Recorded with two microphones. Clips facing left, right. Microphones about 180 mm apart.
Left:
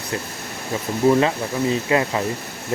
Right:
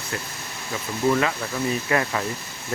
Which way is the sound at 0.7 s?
30° left (ahead or behind).